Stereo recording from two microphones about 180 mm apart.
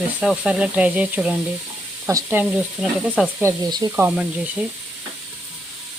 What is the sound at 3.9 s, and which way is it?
Speech, 5° right (ahead or behind).